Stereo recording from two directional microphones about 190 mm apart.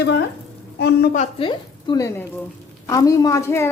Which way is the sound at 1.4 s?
25° left (ahead or behind).